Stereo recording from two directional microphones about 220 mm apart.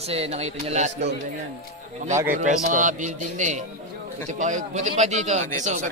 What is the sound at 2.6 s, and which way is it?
A man's voice, 35° right (ahead or behind).